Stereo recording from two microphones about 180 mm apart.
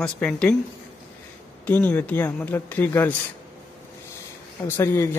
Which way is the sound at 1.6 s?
10° left (ahead or behind).